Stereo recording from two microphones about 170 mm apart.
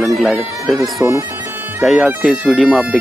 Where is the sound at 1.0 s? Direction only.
15° right (ahead or behind).